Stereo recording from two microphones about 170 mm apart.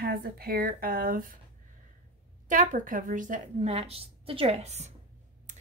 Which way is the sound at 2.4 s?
50° right (ahead or behind).